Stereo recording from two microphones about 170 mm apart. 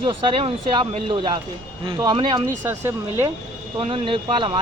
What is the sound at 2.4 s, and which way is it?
Speech, 15° right (ahead or behind).